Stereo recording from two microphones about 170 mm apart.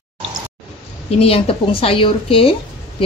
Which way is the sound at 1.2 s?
35° left (ahead or behind).